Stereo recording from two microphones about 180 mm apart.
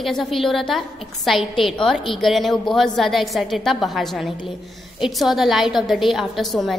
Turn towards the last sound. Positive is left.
turn(degrees=0)  # may be behind; listen again after turning